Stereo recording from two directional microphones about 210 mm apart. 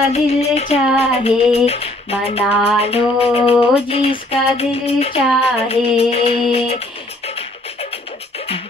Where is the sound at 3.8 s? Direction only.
25° left (ahead or behind).